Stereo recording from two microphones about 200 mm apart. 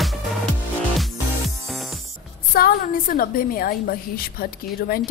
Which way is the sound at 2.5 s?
45° left (ahead or behind).